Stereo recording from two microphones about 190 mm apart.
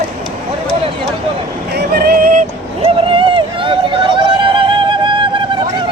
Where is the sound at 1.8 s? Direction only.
50° right (ahead or behind).